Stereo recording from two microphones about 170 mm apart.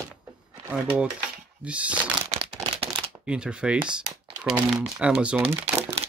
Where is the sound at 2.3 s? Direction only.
35° right (ahead or behind).